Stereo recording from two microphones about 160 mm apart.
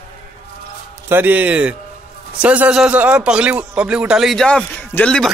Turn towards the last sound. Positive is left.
turn(degrees=5)  # may be behind; listen again after turning